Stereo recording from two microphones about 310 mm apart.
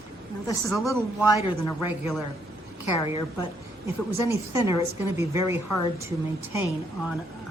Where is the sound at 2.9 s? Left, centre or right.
Centre.